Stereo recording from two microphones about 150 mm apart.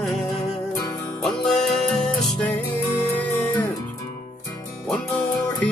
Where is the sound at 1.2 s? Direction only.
5° left (ahead or behind).